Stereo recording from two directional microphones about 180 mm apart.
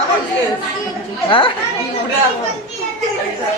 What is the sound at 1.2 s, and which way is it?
Speech, 30° left (ahead or behind).